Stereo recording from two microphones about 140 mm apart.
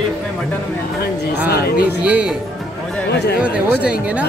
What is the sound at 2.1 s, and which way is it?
Speech, 10° right (ahead or behind).